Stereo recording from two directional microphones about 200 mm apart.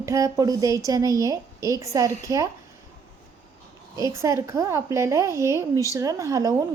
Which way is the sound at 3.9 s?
15° right (ahead or behind).